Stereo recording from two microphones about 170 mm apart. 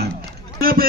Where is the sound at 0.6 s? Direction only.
60° right (ahead or behind).